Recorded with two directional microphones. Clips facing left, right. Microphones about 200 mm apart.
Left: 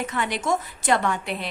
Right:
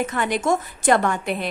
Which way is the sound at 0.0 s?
45° right (ahead or behind).